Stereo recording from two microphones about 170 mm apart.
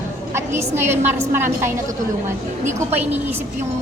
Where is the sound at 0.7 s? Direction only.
15° right (ahead or behind).